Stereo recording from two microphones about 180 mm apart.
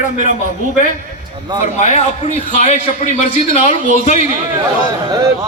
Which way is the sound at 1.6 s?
40° left (ahead or behind).